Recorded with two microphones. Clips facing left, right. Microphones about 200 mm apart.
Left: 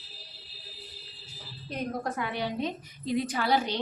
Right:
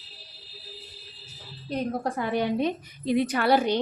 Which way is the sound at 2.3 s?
55° right (ahead or behind).